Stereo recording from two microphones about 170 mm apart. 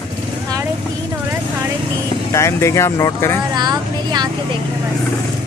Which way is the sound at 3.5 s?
25° right (ahead or behind).